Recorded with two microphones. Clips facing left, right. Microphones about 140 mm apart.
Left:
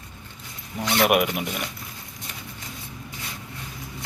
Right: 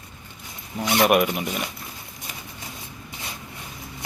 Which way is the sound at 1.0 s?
5° left (ahead or behind).